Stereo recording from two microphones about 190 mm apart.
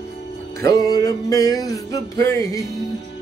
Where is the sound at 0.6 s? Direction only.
20° left (ahead or behind).